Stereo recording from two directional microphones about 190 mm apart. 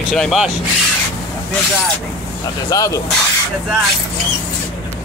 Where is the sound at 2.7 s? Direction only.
20° left (ahead or behind).